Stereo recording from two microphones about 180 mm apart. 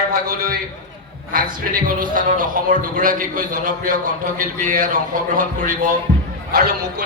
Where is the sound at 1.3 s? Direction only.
50° right (ahead or behind).